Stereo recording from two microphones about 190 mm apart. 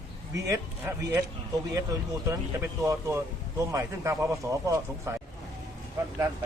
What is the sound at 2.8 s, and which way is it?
Speech, 15° right (ahead or behind).